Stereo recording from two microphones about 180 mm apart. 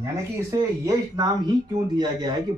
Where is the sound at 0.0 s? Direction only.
15° right (ahead or behind).